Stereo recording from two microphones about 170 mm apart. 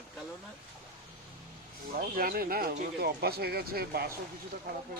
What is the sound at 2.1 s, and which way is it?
Speech, 60° right (ahead or behind).